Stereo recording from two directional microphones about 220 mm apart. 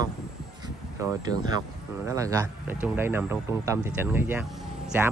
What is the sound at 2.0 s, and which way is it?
Speech, 15° right (ahead or behind).